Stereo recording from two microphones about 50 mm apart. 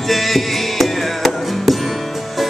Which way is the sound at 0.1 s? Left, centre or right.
Centre.